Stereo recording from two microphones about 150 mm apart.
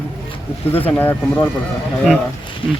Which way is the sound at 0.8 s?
15° left (ahead or behind).